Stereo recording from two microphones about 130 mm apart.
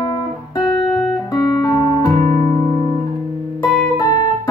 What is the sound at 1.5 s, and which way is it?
Music, 30° left (ahead or behind).